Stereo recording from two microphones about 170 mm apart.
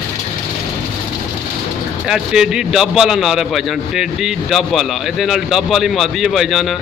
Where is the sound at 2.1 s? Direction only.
5° right (ahead or behind).